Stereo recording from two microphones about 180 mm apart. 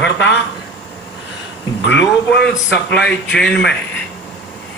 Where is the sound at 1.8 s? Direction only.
80° left.